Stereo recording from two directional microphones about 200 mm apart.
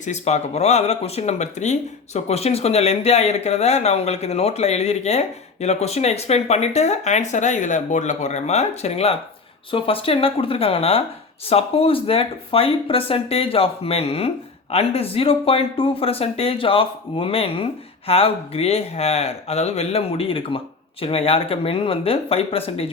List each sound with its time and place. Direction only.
0.0 s speech: 35° left (ahead or behind)